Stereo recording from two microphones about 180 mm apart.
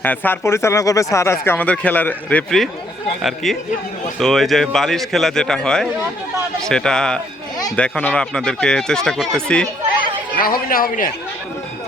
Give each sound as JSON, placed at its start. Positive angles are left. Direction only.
{"t": 0.0, "sound": "speech", "side_deg": 10}
{"t": 10.3, "sound": "speech", "side_deg": 55}